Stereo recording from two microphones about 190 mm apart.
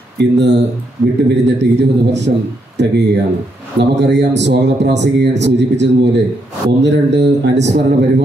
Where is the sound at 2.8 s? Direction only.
70° right (ahead or behind).